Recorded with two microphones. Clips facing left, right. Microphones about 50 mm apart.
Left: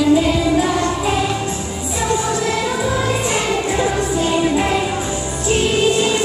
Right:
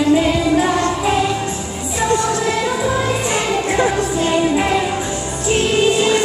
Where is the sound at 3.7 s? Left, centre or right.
Right.